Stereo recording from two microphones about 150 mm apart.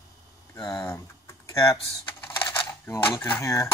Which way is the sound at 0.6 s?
25° left (ahead or behind).